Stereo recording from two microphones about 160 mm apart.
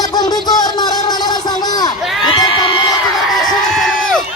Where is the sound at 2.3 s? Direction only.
30° left (ahead or behind).